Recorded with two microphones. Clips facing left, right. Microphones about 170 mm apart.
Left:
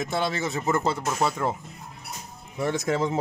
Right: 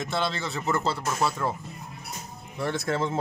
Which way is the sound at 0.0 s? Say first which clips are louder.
Left 2 dB; 10° left (ahead or behind).